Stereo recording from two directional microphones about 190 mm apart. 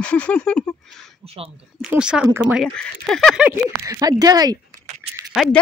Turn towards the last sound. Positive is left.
turn(degrees=0)  # may be behind; listen again after turning